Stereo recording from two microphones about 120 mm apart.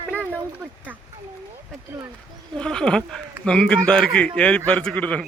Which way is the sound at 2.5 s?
5° left (ahead or behind).